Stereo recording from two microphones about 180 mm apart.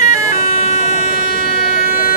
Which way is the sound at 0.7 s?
45° left (ahead or behind).